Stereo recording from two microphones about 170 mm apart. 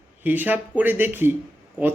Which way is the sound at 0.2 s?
10° right (ahead or behind).